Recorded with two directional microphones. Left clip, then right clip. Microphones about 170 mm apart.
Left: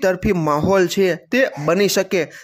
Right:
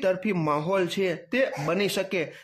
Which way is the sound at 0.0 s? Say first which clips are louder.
Left 7 dB; 35° left (ahead or behind).